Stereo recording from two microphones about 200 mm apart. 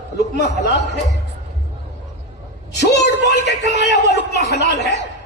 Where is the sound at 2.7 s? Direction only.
60° left (ahead or behind).